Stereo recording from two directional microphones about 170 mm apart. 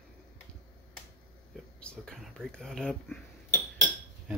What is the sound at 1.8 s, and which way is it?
Speech, 5° left (ahead or behind).